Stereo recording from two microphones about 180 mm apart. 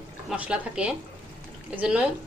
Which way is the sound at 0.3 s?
5° right (ahead or behind).